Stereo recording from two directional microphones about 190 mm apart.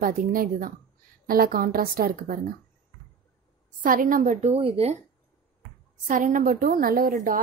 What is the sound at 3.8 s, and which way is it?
A woman's voice, 45° right (ahead or behind).